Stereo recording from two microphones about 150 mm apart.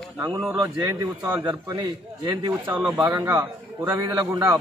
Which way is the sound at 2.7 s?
10° right (ahead or behind).